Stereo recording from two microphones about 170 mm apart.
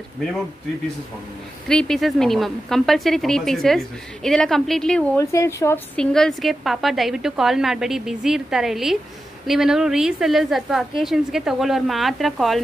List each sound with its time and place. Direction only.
1.7 s speech: 5° left (ahead or behind)
5.2 s speech: 20° left (ahead or behind)
5.9 s speech: 5° left (ahead or behind)